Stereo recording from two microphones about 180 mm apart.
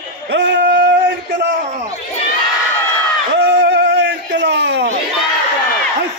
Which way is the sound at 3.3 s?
75° right (ahead or behind).